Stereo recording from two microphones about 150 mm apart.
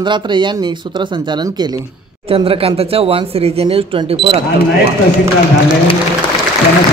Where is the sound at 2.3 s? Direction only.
40° right (ahead or behind).